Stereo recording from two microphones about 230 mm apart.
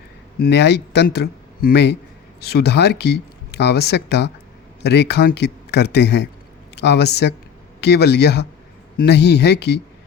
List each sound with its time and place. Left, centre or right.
0.3 s speech: left